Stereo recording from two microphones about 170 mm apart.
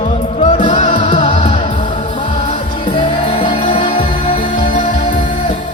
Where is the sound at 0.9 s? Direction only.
30° left (ahead or behind).